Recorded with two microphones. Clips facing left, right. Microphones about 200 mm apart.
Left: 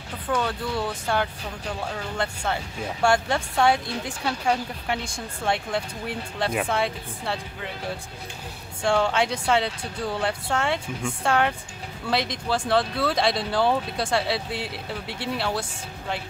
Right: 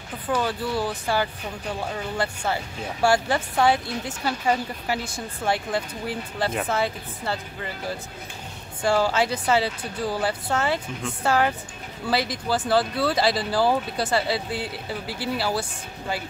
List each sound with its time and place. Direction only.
0.3 s a woman's voice: 5° right (ahead or behind)
8.8 s a woman's voice: 5° right (ahead or behind)